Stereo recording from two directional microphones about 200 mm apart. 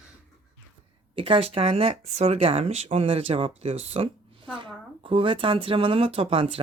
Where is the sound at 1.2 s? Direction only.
25° right (ahead or behind).